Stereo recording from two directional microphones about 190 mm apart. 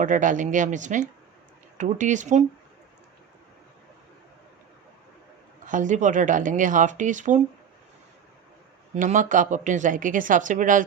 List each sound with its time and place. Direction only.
0.0 s speech: 45° right (ahead or behind)
5.6 s speech: 40° right (ahead or behind)
9.0 s speech: 45° right (ahead or behind)